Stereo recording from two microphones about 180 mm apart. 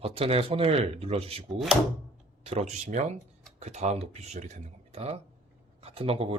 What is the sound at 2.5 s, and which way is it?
Speech, 35° right (ahead or behind).